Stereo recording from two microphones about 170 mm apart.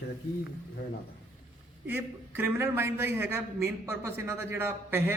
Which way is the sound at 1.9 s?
10° right (ahead or behind).